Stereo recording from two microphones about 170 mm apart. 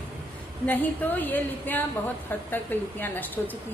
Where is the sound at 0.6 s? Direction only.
10° left (ahead or behind).